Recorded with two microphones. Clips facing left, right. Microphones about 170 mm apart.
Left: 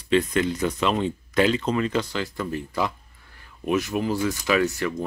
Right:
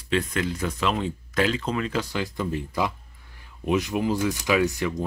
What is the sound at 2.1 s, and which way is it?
Speech, 15° right (ahead or behind).